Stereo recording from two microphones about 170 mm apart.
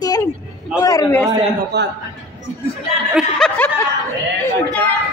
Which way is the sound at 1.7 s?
80° right.